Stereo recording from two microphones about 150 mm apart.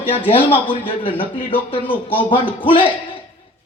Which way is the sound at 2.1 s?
35° left (ahead or behind).